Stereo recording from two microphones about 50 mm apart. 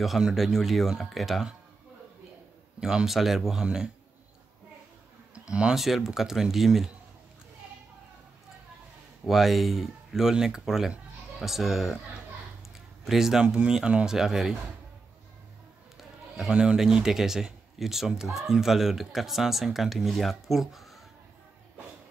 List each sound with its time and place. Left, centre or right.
0.2 s speech: centre
2.8 s a man's voice: centre
5.5 s a man's voice: centre
5.8 s speech: centre
9.3 s a man's voice: centre
13.0 s a man's voice: centre
16.0 s a man's voice: centre